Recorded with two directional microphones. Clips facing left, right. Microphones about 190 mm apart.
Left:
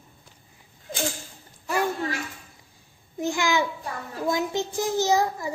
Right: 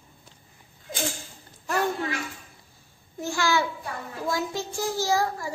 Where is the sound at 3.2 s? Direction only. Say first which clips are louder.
Left 1 dB; 15° left (ahead or behind).